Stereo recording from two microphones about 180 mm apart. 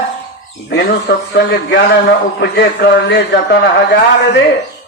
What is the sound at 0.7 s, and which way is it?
A man's voice, 65° left (ahead or behind).